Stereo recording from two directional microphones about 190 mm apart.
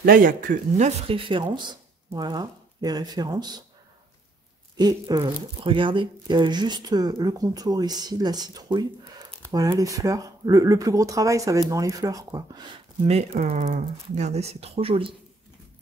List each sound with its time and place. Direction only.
0.0 s speech: 50° right (ahead or behind); by 3.6 s 20° right (ahead or behind)
4.7 s speech: 20° right (ahead or behind)
13.0 s speech: 35° right (ahead or behind)